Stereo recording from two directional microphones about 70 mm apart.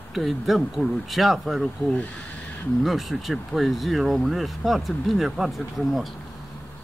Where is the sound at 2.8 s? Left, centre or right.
Centre.